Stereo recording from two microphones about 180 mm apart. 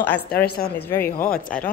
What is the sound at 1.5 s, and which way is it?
Speech, 5° left (ahead or behind).